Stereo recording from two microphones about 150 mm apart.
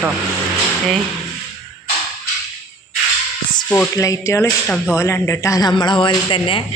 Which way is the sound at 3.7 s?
15° left (ahead or behind).